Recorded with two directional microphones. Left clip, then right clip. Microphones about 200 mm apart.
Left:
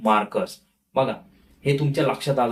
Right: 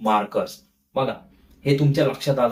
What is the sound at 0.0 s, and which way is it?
Speech, 15° left (ahead or behind).